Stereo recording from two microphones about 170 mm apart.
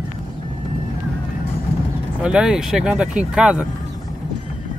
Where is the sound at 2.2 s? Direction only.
5° right (ahead or behind).